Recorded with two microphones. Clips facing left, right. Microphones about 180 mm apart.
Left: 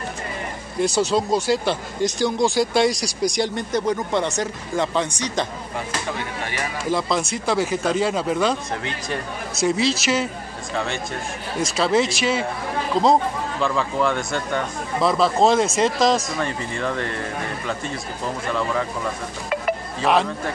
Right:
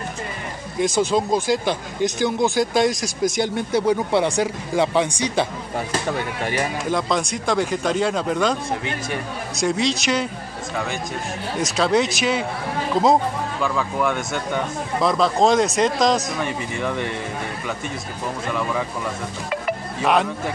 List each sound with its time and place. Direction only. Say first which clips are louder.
0.7 s speech: even; centre (ahead or behind)
6.9 s speech: left 3 dB; centre (ahead or behind)
9.6 s speech: left 1 dB; 5° left (ahead or behind)
11.6 s speech: even; centre (ahead or behind)
13.6 s speech: left 2 dB; 5° right (ahead or behind)
15.0 s speech: even; centre (ahead or behind)
16.4 s speech: right 1 dB; 15° right (ahead or behind)
18.5 s speech: left 1 dB; 10° right (ahead or behind)
20.0 s speech: even; centre (ahead or behind)